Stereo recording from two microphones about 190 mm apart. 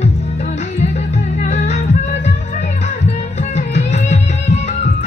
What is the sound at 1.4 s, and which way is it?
Music, 40° left (ahead or behind).